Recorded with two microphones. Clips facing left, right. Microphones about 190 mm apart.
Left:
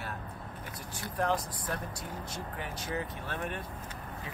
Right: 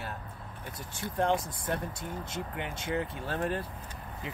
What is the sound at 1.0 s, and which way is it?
Speech, 25° right (ahead or behind).